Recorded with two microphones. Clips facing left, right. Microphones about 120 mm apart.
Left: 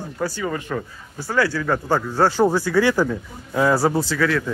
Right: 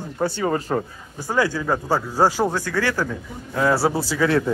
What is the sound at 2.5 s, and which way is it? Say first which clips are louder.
Speech: left 5 dB; 10° left (ahead or behind).